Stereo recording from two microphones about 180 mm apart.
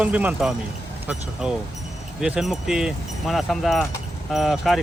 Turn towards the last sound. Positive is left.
turn(degrees=0)  # may be behind; listen again after turning